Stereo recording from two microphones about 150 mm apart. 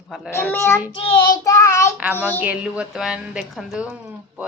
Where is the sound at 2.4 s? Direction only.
5° right (ahead or behind).